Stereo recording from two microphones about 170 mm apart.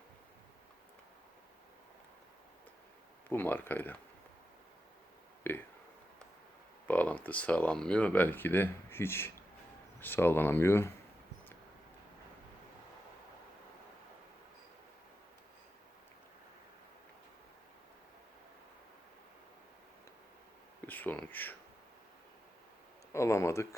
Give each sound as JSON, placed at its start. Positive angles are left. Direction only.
{"t": 3.2, "sound": "speech", "side_deg": 10}
{"t": 5.4, "sound": "a sound", "side_deg": 10}
{"t": 6.8, "sound": "speech", "side_deg": 10}
{"t": 20.8, "sound": "speech", "side_deg": 10}
{"t": 23.1, "sound": "speech", "side_deg": 15}